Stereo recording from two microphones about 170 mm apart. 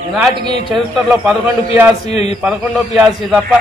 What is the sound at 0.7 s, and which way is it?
Speech, 5° right (ahead or behind).